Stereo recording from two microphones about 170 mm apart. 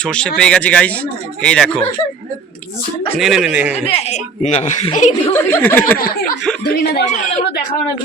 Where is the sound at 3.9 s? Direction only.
40° left (ahead or behind).